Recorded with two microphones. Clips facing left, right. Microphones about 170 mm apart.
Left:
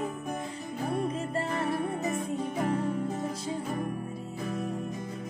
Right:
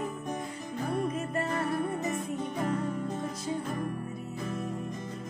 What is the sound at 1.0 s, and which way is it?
Music, 30° left (ahead or behind).